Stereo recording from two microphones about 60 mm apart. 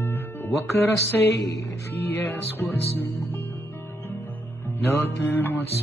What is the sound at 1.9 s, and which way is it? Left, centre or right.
Music, left.